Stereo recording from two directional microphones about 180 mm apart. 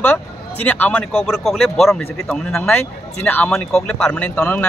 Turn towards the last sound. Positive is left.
turn(degrees=10)  # may be behind; listen again after turning